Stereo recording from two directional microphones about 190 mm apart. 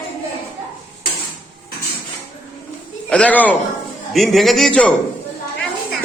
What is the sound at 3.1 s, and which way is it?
A man's voice, 5° left (ahead or behind).